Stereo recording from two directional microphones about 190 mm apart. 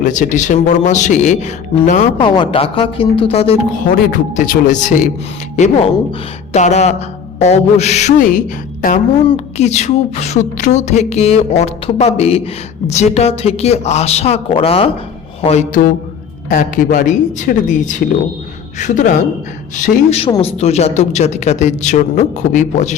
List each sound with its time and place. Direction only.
0.0 s mantra: 40° left (ahead or behind)
2.1 s speech: 25° left (ahead or behind)
3.8 s speech: 50° left (ahead or behind)
4.4 s mantra: 40° left (ahead or behind)
16.5 s speech: 45° left (ahead or behind)
19.7 s mantra: 40° left (ahead or behind)